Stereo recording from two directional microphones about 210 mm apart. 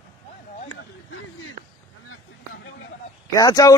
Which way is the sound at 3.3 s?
15° left (ahead or behind).